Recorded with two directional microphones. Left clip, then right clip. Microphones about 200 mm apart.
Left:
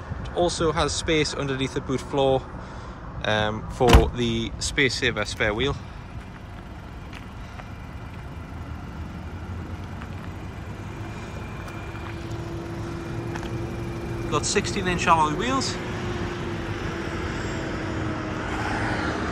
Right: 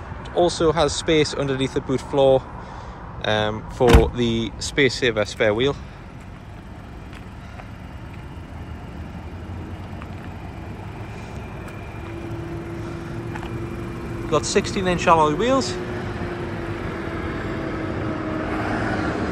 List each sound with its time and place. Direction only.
0.4 s speech: 15° left (ahead or behind)
14.3 s speech: 5° left (ahead or behind)
16.3 s vehicle: 25° right (ahead or behind)